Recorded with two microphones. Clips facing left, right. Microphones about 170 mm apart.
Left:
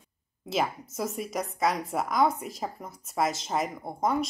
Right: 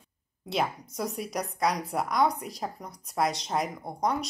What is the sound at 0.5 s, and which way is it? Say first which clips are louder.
Speech: left 1 dB; centre (ahead or behind).